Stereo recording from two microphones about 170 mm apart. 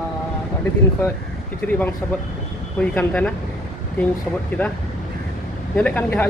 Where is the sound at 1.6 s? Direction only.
10° left (ahead or behind).